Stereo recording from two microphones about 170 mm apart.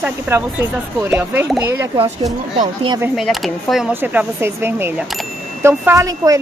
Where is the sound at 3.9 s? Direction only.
10° right (ahead or behind).